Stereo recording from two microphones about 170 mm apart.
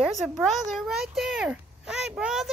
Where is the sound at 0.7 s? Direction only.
Centre (ahead or behind).